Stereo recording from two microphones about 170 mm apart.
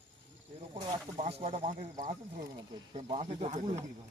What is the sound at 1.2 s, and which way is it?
Speech, 35° right (ahead or behind).